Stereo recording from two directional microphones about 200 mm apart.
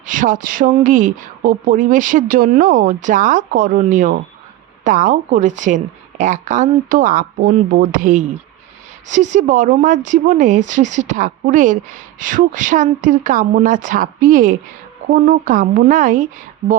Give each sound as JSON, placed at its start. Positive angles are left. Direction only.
{"t": 0.0, "sound": "speech", "side_deg": -40}